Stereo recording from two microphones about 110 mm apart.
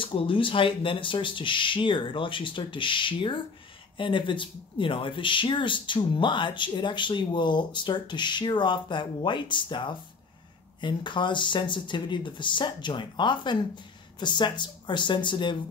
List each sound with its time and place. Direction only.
0.0 s speech: 50° left (ahead or behind)